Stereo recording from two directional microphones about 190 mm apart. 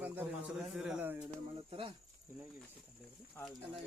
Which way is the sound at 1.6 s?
25° right (ahead or behind).